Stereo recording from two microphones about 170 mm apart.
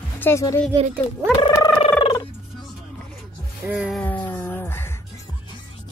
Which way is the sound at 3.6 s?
5° right (ahead or behind).